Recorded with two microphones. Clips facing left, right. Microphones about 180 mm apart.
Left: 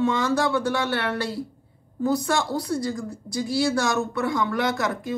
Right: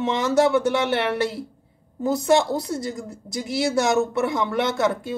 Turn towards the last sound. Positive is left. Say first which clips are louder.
# right 3 dB
turn(degrees=-25)  # may be behind; listen again after turning